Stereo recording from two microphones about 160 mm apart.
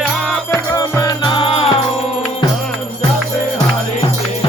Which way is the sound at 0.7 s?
20° left (ahead or behind).